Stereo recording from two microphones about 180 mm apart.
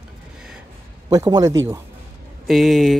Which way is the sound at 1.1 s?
20° right (ahead or behind).